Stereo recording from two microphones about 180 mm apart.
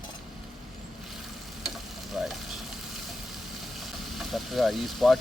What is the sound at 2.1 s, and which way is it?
Frying, centre (ahead or behind).